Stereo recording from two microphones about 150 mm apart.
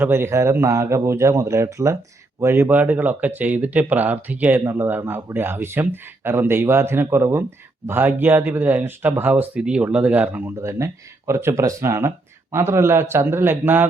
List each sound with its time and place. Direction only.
0.0 s speech: 15° right (ahead or behind)